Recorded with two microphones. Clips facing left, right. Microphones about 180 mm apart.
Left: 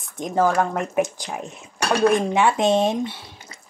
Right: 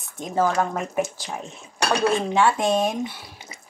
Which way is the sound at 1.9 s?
15° left (ahead or behind).